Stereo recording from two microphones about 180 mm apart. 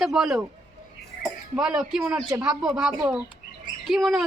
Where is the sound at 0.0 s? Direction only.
Centre (ahead or behind).